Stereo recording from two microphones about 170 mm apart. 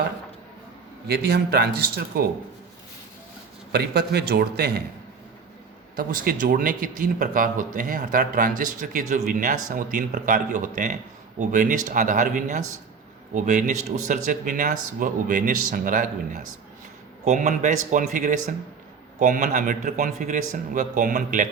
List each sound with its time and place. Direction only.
1.0 s speech: 70° right (ahead or behind)
3.7 s speech: 70° right (ahead or behind)
6.0 s speech: 55° right (ahead or behind)